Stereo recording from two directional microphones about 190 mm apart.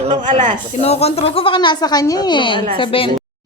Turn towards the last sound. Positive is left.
turn(degrees=25)  # may be behind; listen again after turning